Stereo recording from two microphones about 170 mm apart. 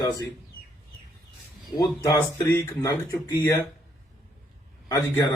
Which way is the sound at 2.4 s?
20° left (ahead or behind).